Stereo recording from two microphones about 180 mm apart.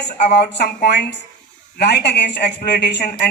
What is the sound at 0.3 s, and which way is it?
A woman's voice, 65° left (ahead or behind).